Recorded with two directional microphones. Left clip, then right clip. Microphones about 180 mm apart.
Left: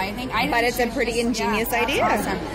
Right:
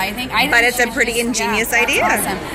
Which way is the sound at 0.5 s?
10° left (ahead or behind).